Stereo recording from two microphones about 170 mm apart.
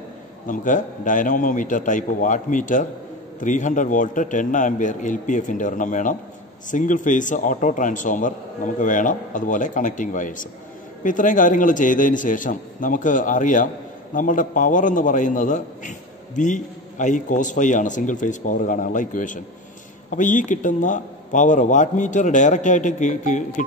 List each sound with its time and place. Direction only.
0.5 s a man's voice: 50° left (ahead or behind)